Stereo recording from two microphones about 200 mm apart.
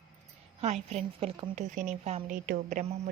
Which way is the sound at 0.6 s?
35° right (ahead or behind).